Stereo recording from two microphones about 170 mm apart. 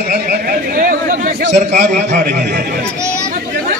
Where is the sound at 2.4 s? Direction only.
90° right.